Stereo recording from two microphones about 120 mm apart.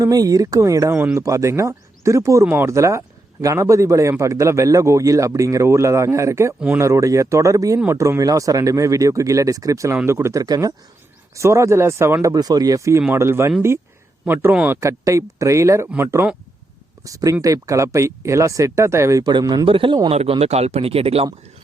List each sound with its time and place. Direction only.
0.0 s a man's voice: 30° right (ahead or behind)
14.8 s a man's voice: 25° right (ahead or behind)
17.0 s speech: 30° right (ahead or behind); by 21.2 s 55° right (ahead or behind)